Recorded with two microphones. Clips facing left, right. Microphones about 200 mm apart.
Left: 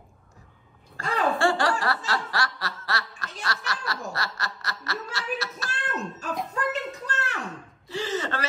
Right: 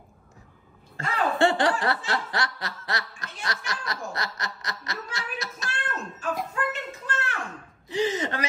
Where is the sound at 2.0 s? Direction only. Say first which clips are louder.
Even; 20° right (ahead or behind).